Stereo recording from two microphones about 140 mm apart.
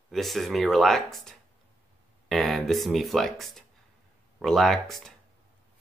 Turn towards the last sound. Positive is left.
turn(degrees=0)  # may be behind; listen again after turning